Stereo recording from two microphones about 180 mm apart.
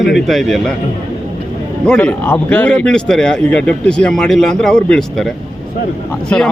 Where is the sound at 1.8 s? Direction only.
5° left (ahead or behind).